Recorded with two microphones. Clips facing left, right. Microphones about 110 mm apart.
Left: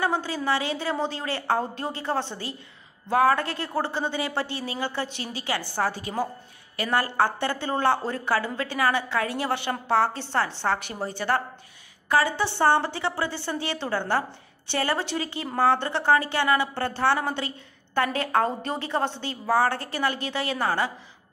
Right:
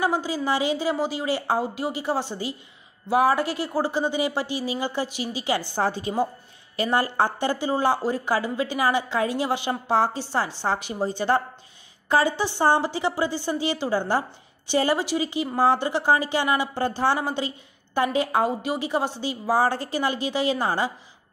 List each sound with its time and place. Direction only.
0.0 s a woman's voice: 15° right (ahead or behind)